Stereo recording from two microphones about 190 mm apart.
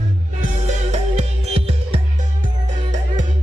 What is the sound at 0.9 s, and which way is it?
Music, 35° right (ahead or behind).